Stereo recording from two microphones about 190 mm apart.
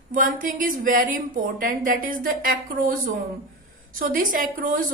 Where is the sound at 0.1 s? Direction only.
45° right (ahead or behind).